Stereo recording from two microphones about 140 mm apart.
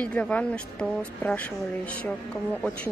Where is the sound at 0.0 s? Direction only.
10° left (ahead or behind).